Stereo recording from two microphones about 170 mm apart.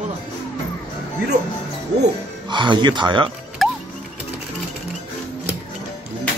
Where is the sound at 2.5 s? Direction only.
25° right (ahead or behind).